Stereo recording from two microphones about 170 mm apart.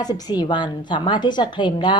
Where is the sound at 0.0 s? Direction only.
25° left (ahead or behind).